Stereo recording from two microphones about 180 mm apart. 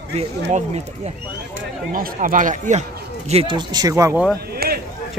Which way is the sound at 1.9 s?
50° right (ahead or behind).